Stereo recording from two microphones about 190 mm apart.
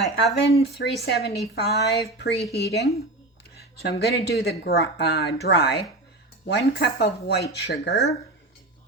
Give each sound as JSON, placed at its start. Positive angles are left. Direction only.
{"t": 0.0, "sound": "speech", "side_deg": 65}